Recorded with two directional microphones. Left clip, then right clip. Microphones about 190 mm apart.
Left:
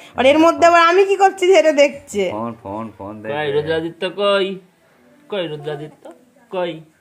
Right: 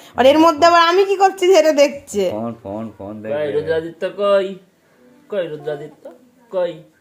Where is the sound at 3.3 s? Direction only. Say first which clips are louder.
Even; 40° left (ahead or behind).